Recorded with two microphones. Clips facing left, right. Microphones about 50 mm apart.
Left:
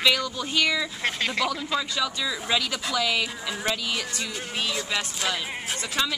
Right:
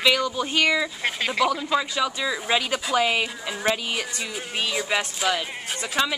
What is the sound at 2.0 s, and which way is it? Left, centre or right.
Speech, right.